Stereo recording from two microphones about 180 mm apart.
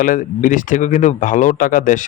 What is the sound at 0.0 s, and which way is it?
A man's voice, 50° left (ahead or behind).